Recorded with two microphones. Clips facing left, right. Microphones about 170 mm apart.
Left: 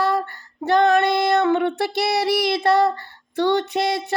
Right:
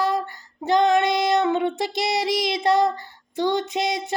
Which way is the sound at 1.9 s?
20° right (ahead or behind).